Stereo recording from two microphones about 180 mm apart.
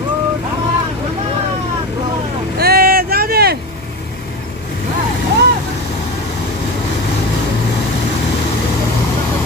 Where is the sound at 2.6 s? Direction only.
55° right (ahead or behind).